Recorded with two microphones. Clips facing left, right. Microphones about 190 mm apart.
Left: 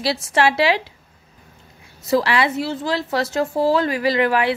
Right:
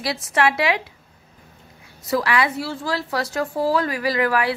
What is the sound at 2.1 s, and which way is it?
A woman's voice, 25° left (ahead or behind).